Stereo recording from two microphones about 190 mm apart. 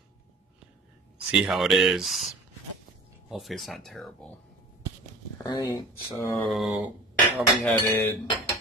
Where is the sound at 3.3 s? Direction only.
Centre (ahead or behind).